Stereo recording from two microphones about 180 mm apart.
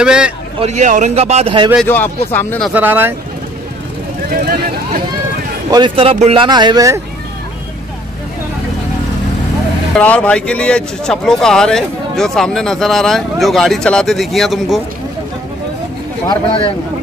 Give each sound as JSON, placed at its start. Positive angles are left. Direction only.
{"t": 0.0, "sound": "speech", "side_deg": -5}
{"t": 0.6, "sound": "speech", "side_deg": -40}
{"t": 2.3, "sound": "speech", "side_deg": 10}
{"t": 2.7, "sound": "speech", "side_deg": -10}
{"t": 5.7, "sound": "speech", "side_deg": -25}
{"t": 9.9, "sound": "speech", "side_deg": 5}
{"t": 16.3, "sound": "speech", "side_deg": 25}